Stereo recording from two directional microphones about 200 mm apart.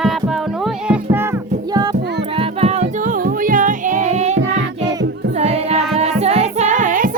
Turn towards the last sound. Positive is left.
turn(degrees=-40)  # may be behind; listen again after turning